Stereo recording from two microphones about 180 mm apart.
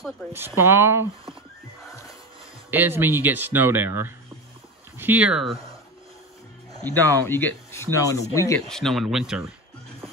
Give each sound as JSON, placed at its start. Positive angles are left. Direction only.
{"t": 0.3, "sound": "speech", "side_deg": -10}
{"t": 1.9, "sound": "music", "side_deg": 20}
{"t": 2.7, "sound": "speech", "side_deg": -10}
{"t": 6.7, "sound": "a man's voice", "side_deg": 10}
{"t": 8.6, "sound": "speech", "side_deg": 0}